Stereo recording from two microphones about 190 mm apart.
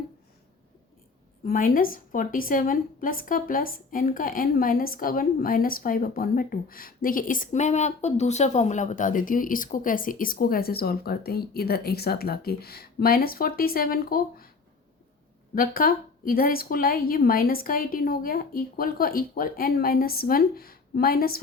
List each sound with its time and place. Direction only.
1.5 s a woman's voice: 45° left (ahead or behind)
15.5 s a woman's voice: 50° left (ahead or behind)